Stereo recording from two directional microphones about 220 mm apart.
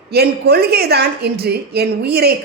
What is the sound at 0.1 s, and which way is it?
A woman's voice, 45° right (ahead or behind).